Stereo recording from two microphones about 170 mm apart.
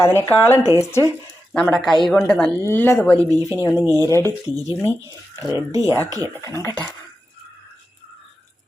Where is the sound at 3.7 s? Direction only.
15° right (ahead or behind).